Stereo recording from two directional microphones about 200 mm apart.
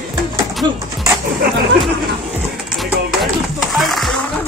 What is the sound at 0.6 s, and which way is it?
Speech, 20° right (ahead or behind).